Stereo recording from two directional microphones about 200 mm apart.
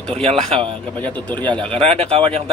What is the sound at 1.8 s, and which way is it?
Speech, 30° right (ahead or behind).